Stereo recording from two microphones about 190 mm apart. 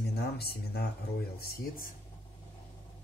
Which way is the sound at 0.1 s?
55° left (ahead or behind).